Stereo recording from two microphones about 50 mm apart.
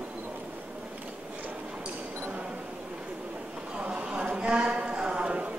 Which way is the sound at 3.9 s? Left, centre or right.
Right.